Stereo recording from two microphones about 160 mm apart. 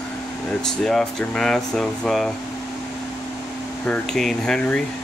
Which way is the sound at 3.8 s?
5° left (ahead or behind).